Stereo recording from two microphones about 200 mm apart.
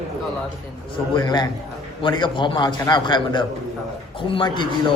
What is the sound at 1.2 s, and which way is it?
Speech, 20° left (ahead or behind).